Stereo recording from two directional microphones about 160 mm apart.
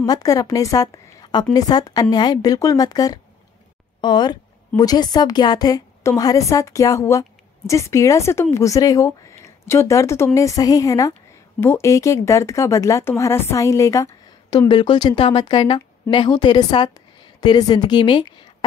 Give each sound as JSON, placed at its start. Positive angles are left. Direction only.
{"t": 0.0, "sound": "a woman's voice", "side_deg": 20}